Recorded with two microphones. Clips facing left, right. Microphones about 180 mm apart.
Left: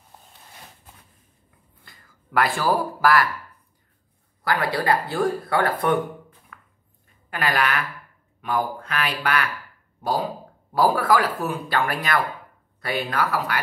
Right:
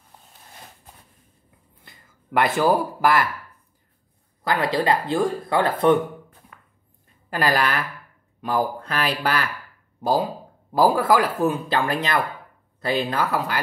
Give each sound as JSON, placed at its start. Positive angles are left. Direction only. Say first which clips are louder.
{"t": 1.9, "sound": "speech", "louder": "right 7 dB", "side_deg": -20}
{"t": 4.5, "sound": "speech", "louder": "right 1 dB", "side_deg": -20}
{"t": 6.5, "sound": "chopping", "louder": "left 3 dB", "side_deg": -35}
{"t": 7.2, "sound": "speech", "louder": "right 2 dB", "side_deg": -35}
{"t": 10.7, "sound": "speech", "louder": "right 2 dB", "side_deg": -25}